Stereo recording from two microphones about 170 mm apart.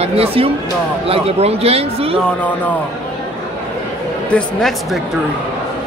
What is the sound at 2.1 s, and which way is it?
Speech, 5° left (ahead or behind).